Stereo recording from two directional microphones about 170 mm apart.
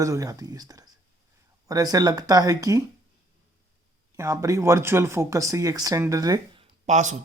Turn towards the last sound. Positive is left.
turn(degrees=-45)  # may be behind; listen again after turning